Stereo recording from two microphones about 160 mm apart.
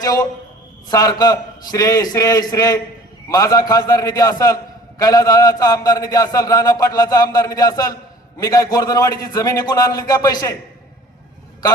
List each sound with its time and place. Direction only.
0.9 s a man's voice: 25° left (ahead or behind)